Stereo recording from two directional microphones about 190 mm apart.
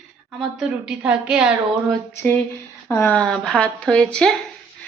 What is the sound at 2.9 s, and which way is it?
Speech, 10° left (ahead or behind).